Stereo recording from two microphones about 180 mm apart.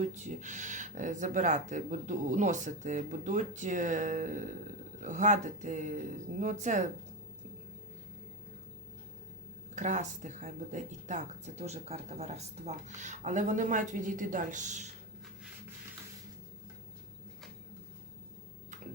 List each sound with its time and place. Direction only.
0.0 s speech: 40° right (ahead or behind)
9.7 s speech: 40° right (ahead or behind)